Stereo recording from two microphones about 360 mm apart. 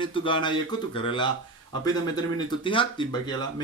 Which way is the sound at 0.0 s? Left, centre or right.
Centre.